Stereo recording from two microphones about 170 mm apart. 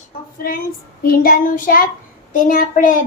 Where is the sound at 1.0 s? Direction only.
55° left (ahead or behind).